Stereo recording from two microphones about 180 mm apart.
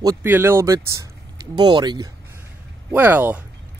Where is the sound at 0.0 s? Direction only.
20° right (ahead or behind).